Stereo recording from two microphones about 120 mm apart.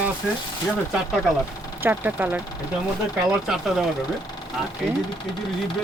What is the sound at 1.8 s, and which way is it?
Speech, 15° right (ahead or behind).